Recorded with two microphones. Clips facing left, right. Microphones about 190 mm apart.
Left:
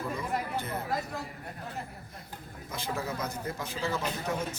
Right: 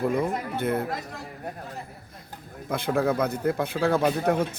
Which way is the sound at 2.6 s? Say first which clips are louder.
Right 11 dB; 60° right (ahead or behind).